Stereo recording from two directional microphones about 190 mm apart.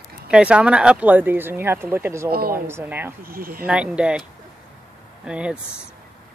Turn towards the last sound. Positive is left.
turn(degrees=-5)  # may be behind; listen again after turning